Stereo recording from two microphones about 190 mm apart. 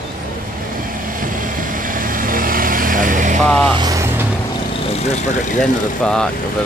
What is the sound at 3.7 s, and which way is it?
Vehicle, 20° right (ahead or behind).